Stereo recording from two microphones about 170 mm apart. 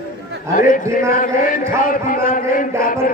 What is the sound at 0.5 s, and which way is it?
A man's voice, 50° left (ahead or behind).